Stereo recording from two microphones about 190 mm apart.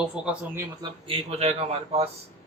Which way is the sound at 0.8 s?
25° right (ahead or behind).